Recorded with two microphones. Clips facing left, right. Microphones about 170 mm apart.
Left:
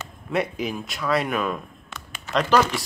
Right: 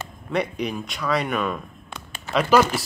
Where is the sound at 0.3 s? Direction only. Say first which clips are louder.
Even; centre (ahead or behind).